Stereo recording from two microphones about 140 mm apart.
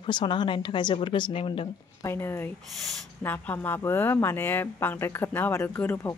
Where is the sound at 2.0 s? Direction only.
15° left (ahead or behind).